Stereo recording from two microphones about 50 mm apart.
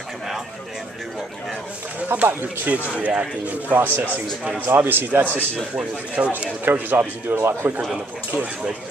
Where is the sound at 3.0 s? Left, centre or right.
Right.